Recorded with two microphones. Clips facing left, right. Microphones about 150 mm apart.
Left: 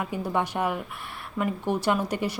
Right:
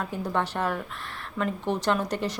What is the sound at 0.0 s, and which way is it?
Speech, 10° left (ahead or behind).